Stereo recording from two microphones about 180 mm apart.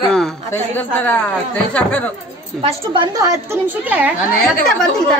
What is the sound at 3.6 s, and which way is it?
Speech, 10° right (ahead or behind).